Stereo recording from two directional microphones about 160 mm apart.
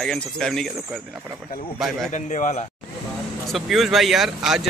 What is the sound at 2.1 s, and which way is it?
Speech, 50° left (ahead or behind).